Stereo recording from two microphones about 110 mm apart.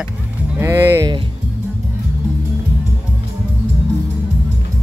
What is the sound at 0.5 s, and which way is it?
Music, 20° right (ahead or behind).